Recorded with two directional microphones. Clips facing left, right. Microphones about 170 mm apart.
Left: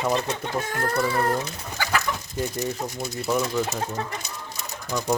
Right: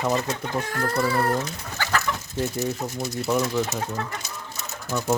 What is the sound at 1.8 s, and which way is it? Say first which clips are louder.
Chicken: even; 15° left (ahead or behind).